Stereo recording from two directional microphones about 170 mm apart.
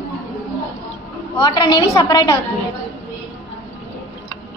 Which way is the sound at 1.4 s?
25° left (ahead or behind).